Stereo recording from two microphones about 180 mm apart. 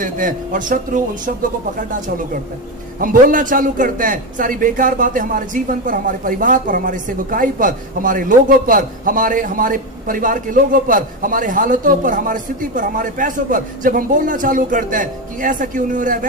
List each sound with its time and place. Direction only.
0.0 s a man's voice: 50° right (ahead or behind)